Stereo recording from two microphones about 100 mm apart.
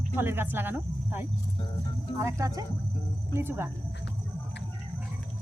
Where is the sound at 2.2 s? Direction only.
35° right (ahead or behind).